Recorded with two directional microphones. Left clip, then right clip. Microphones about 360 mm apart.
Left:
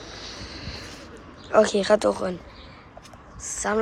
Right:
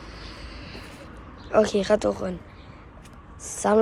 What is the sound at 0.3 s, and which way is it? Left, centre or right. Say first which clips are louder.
Vehicle: left 4 dB; centre.